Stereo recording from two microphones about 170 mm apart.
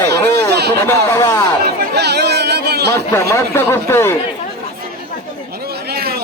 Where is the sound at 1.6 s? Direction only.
70° right (ahead or behind).